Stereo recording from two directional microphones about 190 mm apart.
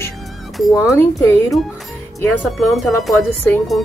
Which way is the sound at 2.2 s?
5° left (ahead or behind).